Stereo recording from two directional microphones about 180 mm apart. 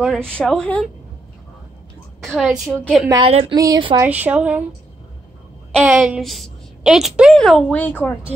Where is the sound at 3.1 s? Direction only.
30° right (ahead or behind).